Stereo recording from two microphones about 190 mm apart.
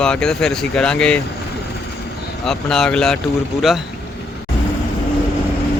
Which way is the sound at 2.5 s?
5° left (ahead or behind).